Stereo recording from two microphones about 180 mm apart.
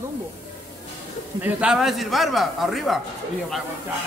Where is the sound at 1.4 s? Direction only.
5° right (ahead or behind).